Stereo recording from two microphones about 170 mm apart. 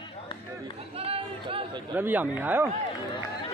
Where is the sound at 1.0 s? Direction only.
35° right (ahead or behind).